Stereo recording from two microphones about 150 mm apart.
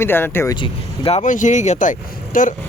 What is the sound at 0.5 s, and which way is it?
Speech, 35° left (ahead or behind).